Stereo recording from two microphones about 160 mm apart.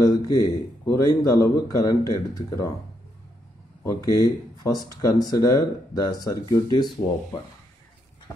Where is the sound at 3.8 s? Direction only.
20° left (ahead or behind).